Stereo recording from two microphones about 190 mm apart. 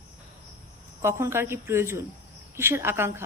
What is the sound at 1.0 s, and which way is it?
A woman's voice, 15° right (ahead or behind).